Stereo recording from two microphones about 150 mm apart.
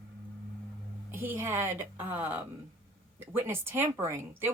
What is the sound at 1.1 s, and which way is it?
Speech, 15° right (ahead or behind).